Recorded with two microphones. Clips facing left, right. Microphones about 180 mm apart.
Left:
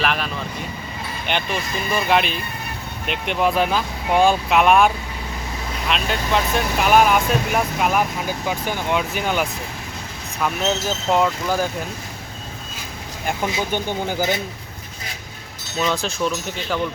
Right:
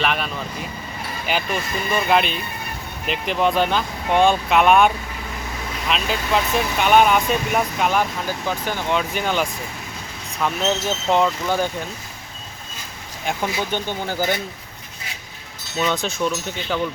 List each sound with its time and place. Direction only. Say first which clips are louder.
0.0 s speech: even; centre (ahead or behind)
5.9 s speech: even; centre (ahead or behind)
13.4 s speech: left 1 dB; 15° left (ahead or behind)
15.8 s speech: even; centre (ahead or behind)